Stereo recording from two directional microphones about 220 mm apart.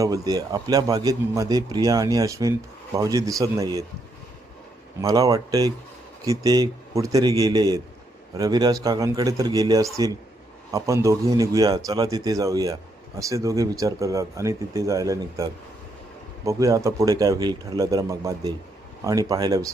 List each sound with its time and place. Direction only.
0.0 s a man's voice: 15° right (ahead or behind)
4.9 s a man's voice: 15° right (ahead or behind)